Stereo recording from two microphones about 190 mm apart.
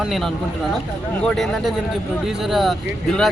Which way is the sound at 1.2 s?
Centre (ahead or behind).